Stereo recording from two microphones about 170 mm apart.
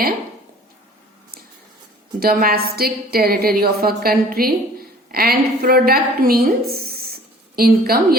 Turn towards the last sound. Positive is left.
turn(degrees=-60)  # may be behind; listen again after turning